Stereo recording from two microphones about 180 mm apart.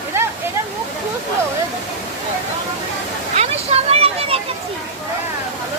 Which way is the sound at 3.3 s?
35° right (ahead or behind).